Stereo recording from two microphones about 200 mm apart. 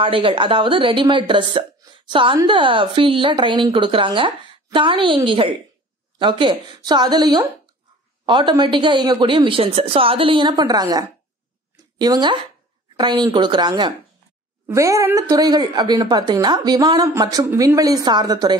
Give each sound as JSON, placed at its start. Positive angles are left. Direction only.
{"t": 0.0, "sound": "a woman's voice", "side_deg": -25}